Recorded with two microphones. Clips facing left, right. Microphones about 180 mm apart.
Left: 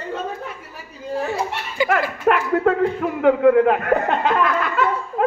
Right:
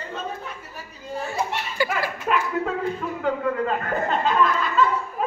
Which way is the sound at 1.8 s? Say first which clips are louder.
Left 5 dB; 15° left (ahead or behind).